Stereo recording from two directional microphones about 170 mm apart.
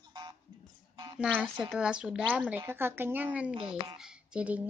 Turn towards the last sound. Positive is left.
turn(degrees=-5)  # may be behind; listen again after turning